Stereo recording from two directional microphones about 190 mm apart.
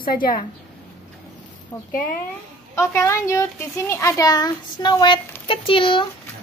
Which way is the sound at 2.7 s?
15° left (ahead or behind).